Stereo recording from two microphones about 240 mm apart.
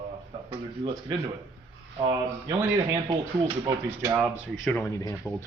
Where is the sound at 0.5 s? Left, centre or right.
Right.